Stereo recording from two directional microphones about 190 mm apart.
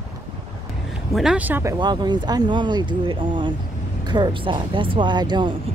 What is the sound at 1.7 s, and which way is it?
Speech, 20° right (ahead or behind).